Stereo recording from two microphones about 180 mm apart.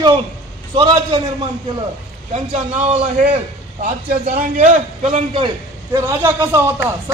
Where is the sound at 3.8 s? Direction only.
50° right (ahead or behind).